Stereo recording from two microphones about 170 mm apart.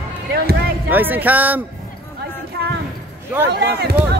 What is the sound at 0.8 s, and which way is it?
Speech, 10° right (ahead or behind).